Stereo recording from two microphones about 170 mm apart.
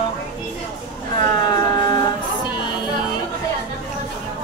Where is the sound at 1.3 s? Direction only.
25° left (ahead or behind).